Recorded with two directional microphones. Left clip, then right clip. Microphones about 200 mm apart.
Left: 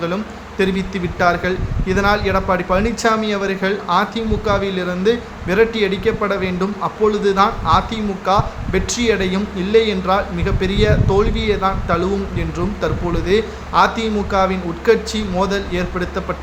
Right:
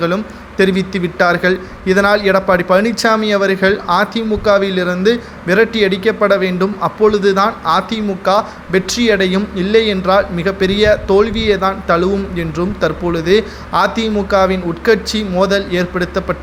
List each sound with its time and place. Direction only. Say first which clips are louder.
0.0 s speech: right 5 dB; 25° right (ahead or behind)